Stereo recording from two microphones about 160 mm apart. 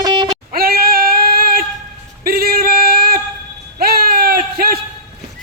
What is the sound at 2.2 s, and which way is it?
Singing, 70° right (ahead or behind).